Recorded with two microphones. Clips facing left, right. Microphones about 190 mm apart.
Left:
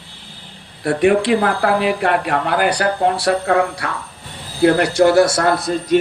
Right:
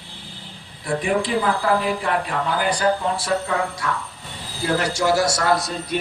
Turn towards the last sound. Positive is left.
turn(degrees=55)  # may be behind; listen again after turning